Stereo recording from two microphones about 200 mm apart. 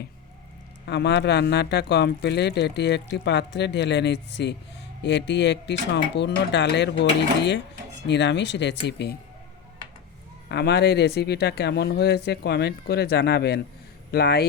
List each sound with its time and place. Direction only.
0.9 s speech: 60° left (ahead or behind)
10.5 s speech: 55° left (ahead or behind)